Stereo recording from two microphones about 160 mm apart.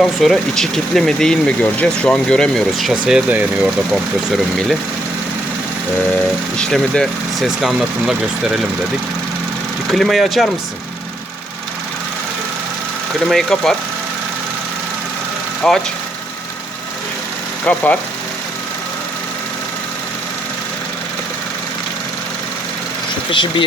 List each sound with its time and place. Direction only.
0.0 s speech: centre (ahead or behind)
6.6 s speech: 5° left (ahead or behind)
9.9 s speech: centre (ahead or behind)
13.3 s speech: 5° left (ahead or behind)
15.6 s speech: 5° left (ahead or behind)
17.7 s speech: 10° left (ahead or behind)
23.3 s speech: 30° left (ahead or behind)